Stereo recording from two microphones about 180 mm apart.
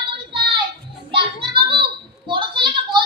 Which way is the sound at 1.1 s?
30° right (ahead or behind).